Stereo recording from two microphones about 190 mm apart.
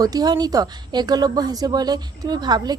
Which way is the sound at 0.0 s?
20° right (ahead or behind).